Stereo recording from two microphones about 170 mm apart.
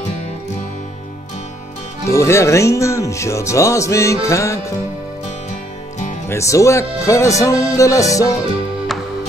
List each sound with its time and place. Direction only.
2.0 s speech: 15° left (ahead or behind)
6.2 s speech: 15° left (ahead or behind)